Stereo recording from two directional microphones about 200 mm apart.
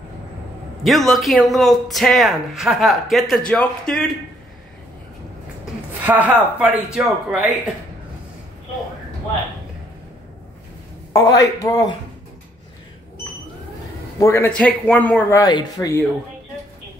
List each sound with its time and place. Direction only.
0.8 s speech: centre (ahead or behind)
6.0 s speech: 10° right (ahead or behind)
11.1 s speech: 15° left (ahead or behind)
14.2 s speech: 10° left (ahead or behind)